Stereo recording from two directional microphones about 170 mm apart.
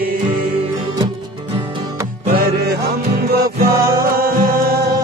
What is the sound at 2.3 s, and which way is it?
Music, 65° right (ahead or behind).